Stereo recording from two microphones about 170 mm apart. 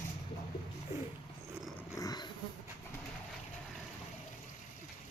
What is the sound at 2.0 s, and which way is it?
Dog, 20° left (ahead or behind).